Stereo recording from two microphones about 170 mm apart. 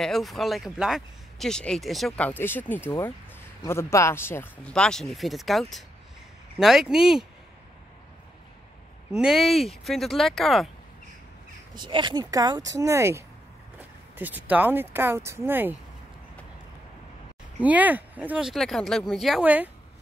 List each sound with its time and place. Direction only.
0.0 s speech: centre (ahead or behind)
9.1 s speech: 5° right (ahead or behind)
11.8 s speech: 25° right (ahead or behind)
17.6 s speech: 10° right (ahead or behind)